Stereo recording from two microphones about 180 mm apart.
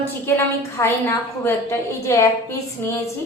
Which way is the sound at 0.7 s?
15° left (ahead or behind).